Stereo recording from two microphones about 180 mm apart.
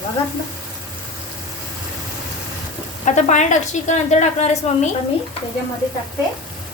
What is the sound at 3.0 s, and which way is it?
A woman's voice, 40° left (ahead or behind).